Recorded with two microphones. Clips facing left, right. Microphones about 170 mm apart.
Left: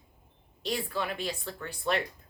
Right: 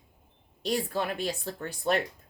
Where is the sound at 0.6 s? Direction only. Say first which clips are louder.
Right 3 dB; 40° right (ahead or behind).